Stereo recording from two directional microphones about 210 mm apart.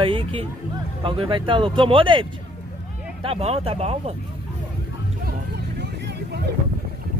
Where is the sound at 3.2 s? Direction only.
30° right (ahead or behind).